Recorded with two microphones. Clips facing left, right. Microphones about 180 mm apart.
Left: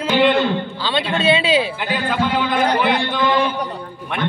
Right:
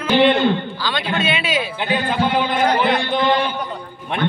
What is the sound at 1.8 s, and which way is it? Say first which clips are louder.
Speech: right 1 dB; 25° right (ahead or behind).